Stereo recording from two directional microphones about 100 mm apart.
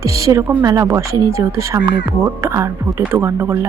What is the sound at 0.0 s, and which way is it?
Speech, 30° right (ahead or behind).